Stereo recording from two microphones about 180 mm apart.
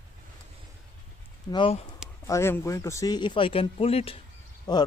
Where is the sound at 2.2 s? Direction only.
15° left (ahead or behind); by 4.2 s 35° left (ahead or behind).